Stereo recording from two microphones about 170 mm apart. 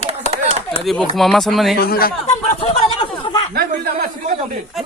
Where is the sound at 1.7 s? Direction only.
65° left (ahead or behind).